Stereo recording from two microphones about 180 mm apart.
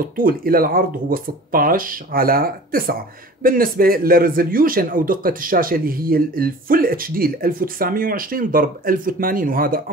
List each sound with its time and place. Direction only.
0.0 s a man's voice: 50° right (ahead or behind)